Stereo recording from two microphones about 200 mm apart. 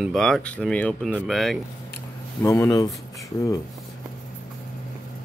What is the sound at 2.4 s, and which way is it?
Speech, 15° left (ahead or behind).